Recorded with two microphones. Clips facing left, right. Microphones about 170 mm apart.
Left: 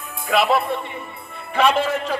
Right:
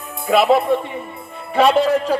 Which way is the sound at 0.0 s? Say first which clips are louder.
Right 4 dB; 40° right (ahead or behind).